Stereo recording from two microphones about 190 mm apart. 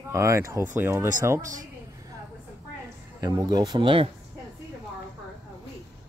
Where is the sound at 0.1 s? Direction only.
15° right (ahead or behind).